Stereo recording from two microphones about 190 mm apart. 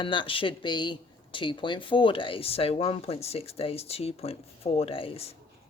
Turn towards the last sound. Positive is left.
turn(degrees=30)  # may be behind; listen again after turning